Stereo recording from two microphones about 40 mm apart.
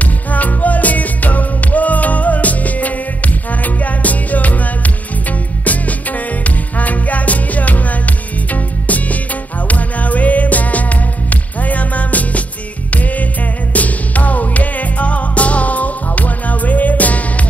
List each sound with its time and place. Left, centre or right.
0.0 s music: left